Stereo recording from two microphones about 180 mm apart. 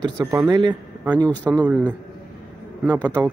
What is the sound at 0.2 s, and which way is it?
Speech, 10° right (ahead or behind).